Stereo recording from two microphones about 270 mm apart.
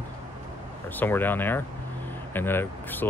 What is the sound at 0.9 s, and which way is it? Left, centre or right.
Speech, centre.